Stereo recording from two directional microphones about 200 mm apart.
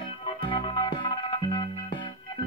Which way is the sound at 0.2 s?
25° left (ahead or behind).